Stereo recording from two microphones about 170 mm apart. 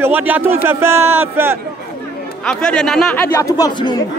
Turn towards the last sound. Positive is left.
turn(degrees=20)  # may be behind; listen again after turning